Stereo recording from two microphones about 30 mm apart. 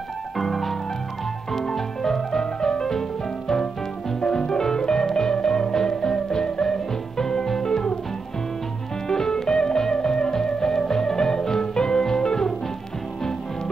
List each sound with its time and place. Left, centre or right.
0.4 s music: centre
1.5 s music: centre
9.0 s music: centre